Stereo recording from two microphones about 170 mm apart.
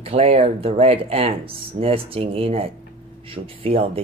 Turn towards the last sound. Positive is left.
turn(degrees=-35)  # may be behind; listen again after turning